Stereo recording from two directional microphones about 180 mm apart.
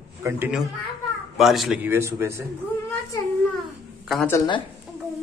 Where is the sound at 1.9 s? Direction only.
15° right (ahead or behind).